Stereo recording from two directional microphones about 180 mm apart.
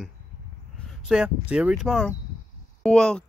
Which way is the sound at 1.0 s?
5° right (ahead or behind).